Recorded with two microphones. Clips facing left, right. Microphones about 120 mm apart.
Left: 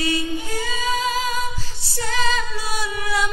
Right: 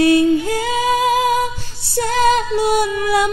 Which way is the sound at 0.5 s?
65° right (ahead or behind).